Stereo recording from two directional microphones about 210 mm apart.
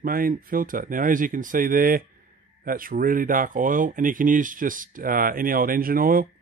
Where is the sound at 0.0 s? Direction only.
45° right (ahead or behind).